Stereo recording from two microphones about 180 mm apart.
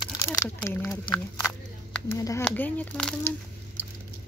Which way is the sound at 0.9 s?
20° left (ahead or behind).